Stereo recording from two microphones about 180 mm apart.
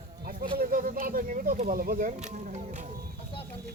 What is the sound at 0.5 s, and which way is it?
Speech, 50° right (ahead or behind).